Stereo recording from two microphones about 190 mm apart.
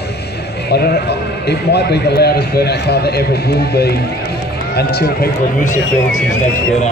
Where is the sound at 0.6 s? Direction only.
55° left (ahead or behind).